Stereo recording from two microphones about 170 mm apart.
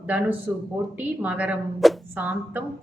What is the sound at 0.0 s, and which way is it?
A woman's voice, 10° right (ahead or behind).